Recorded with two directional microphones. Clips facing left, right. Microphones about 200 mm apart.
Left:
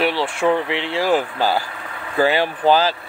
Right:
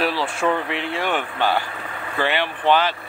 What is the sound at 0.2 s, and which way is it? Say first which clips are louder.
Speech: left 3 dB; 25° left (ahead or behind).